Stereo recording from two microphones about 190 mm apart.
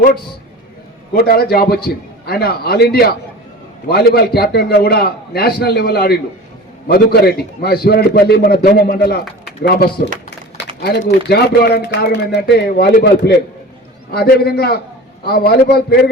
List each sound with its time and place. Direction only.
1.1 s a man's voice: 55° left (ahead or behind)